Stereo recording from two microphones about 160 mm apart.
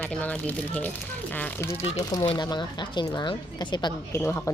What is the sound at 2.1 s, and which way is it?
Speech, 30° left (ahead or behind).